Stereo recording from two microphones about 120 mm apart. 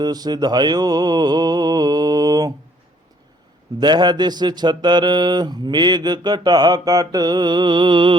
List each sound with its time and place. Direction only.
0.0 s mantra: 35° right (ahead or behind)
3.8 s mantra: 40° right (ahead or behind)